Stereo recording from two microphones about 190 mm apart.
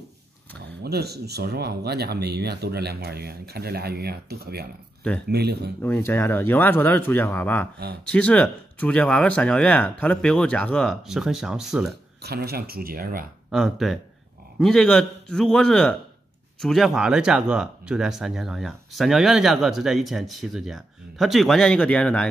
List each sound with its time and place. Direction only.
0.6 s speech: 60° right (ahead or behind)
5.8 s speech: 10° left (ahead or behind)
12.2 s speech: 55° right (ahead or behind)
13.5 s speech: centre (ahead or behind)